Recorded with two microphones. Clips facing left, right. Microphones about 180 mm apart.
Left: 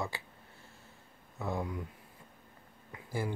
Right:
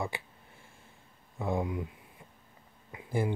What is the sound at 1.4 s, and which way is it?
Speech, 20° right (ahead or behind).